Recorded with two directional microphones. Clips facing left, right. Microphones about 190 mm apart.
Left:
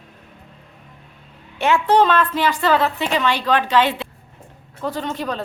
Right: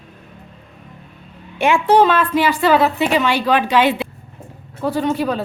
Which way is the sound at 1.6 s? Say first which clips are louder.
Right 3 dB; 10° right (ahead or behind).